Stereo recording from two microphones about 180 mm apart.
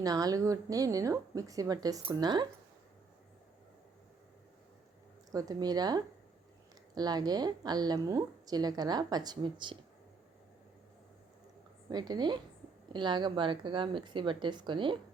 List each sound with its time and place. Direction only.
0.0 s a woman's voice: 20° right (ahead or behind)
5.3 s a woman's voice: 20° right (ahead or behind)
11.9 s a woman's voice: 20° right (ahead or behind)